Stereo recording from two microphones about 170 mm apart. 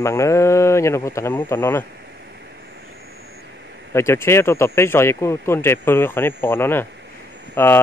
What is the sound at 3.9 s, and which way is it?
Speech, 15° left (ahead or behind).